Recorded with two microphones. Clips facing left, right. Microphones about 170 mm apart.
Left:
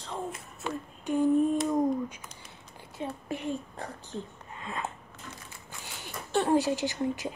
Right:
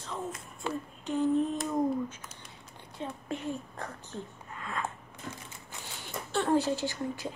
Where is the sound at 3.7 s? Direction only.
35° left (ahead or behind).